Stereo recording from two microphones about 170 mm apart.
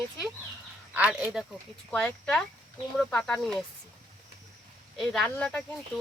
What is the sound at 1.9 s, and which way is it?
Speech, 5° left (ahead or behind).